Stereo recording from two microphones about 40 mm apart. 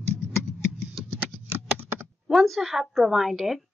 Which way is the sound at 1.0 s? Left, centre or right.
Right.